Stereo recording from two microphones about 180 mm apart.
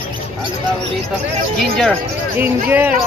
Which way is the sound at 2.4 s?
10° right (ahead or behind).